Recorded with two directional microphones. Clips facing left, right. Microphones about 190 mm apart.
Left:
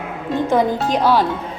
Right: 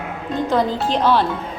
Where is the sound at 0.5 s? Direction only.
10° left (ahead or behind).